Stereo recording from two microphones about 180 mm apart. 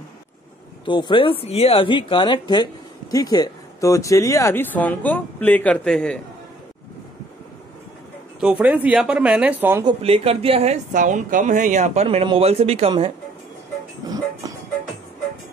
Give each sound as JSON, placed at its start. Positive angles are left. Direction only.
{"t": 0.8, "sound": "a woman's voice", "side_deg": 25}
{"t": 8.4, "sound": "speech", "side_deg": -5}
{"t": 9.8, "sound": "speech", "side_deg": -35}
{"t": 14.0, "sound": "music", "side_deg": -20}